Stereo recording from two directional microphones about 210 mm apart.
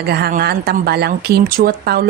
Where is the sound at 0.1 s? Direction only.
45° right (ahead or behind).